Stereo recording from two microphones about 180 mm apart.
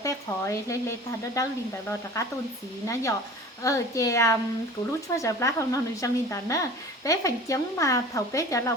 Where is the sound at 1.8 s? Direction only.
15° left (ahead or behind).